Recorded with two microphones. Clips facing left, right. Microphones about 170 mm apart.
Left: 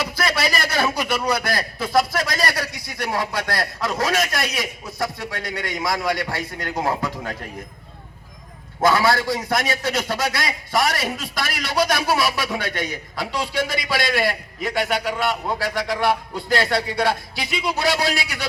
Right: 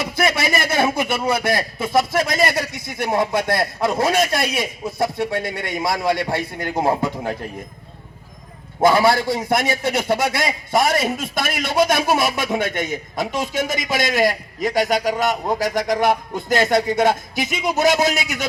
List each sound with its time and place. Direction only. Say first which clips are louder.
0.0 s a man's voice: right 3 dB; 25° right (ahead or behind)
8.8 s a man's voice: right 3 dB; 25° right (ahead or behind)
11.3 s a man's voice: right 4 dB; 50° right (ahead or behind)
11.7 s a man's voice: right 3 dB; 25° right (ahead or behind)
13.3 s a man's voice: even; 45° right (ahead or behind)